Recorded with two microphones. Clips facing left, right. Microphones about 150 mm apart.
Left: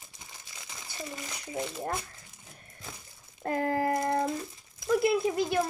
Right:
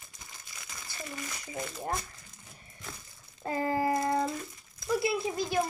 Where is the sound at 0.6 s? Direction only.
20° left (ahead or behind).